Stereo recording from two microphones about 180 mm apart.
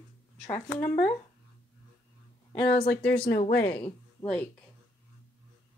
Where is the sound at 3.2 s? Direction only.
60° left (ahead or behind).